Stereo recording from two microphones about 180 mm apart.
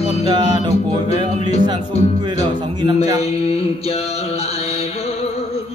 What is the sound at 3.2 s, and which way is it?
Mantra, 35° left (ahead or behind).